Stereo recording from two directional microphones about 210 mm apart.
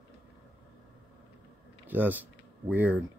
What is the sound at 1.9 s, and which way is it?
Speech, 10° right (ahead or behind).